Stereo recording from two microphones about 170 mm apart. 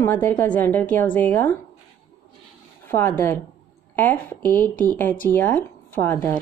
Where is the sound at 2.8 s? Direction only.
10° left (ahead or behind).